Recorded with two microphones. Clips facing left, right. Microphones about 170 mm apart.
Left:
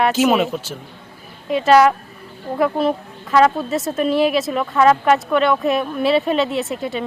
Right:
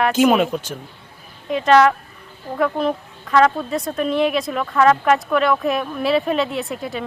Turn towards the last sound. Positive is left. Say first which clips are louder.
# left 3 dB
turn(degrees=0)  # may be behind; listen again after turning